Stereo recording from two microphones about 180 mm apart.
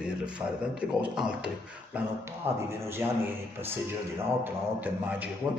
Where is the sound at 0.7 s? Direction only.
5° right (ahead or behind).